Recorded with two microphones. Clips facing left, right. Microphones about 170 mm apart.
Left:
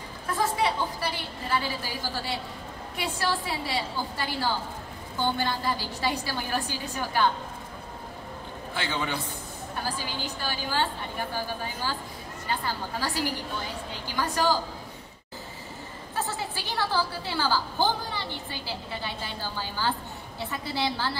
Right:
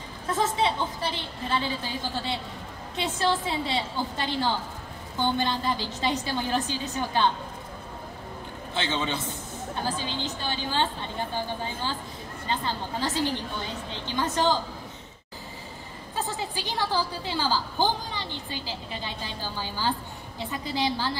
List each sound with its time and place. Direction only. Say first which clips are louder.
0.3 s a woman's voice: right 1 dB; 20° right (ahead or behind)
8.7 s a woman's voice: right 2 dB; 20° right (ahead or behind)
16.2 s a woman's voice: right 1 dB; 15° right (ahead or behind)